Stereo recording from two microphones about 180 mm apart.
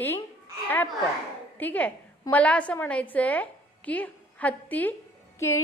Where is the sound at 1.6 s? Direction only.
10° left (ahead or behind).